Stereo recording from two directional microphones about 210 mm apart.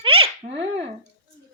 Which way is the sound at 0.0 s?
25° right (ahead or behind).